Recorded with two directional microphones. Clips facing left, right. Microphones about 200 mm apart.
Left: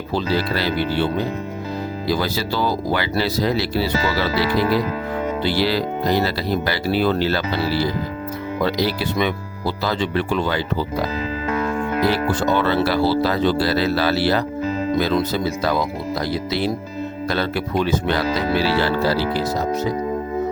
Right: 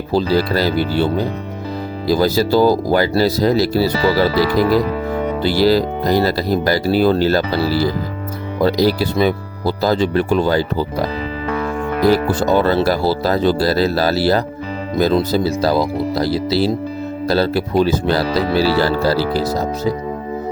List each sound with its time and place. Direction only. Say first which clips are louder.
0.1 s speech: right 6 dB; 35° right (ahead or behind)